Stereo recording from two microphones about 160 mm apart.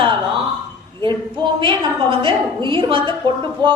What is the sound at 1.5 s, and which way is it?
A woman's voice, 30° right (ahead or behind).